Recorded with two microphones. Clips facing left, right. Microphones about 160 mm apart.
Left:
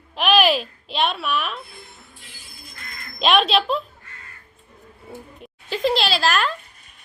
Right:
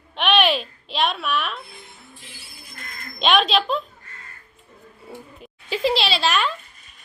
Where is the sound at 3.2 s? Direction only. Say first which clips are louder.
Left 1 dB; centre (ahead or behind).